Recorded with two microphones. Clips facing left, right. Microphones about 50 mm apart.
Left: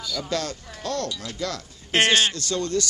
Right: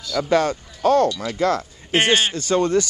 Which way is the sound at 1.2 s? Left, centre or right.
Right.